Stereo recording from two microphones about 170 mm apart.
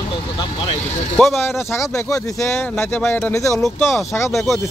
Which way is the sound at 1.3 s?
15° left (ahead or behind).